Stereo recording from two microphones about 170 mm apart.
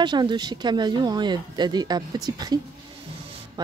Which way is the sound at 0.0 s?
25° right (ahead or behind).